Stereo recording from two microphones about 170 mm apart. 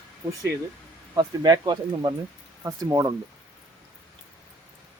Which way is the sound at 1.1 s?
20° right (ahead or behind).